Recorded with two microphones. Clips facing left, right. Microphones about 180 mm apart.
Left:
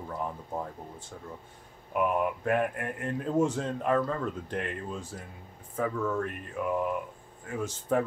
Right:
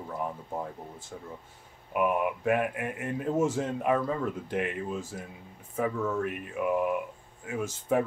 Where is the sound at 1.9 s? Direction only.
5° right (ahead or behind).